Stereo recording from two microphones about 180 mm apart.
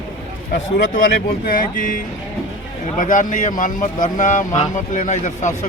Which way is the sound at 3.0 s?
45° left (ahead or behind).